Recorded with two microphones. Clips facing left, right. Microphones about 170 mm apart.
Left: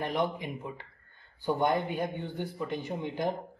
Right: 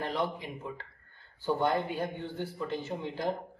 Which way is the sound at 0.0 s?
20° left (ahead or behind).